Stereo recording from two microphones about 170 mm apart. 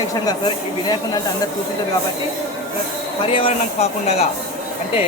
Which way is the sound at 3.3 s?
35° left (ahead or behind).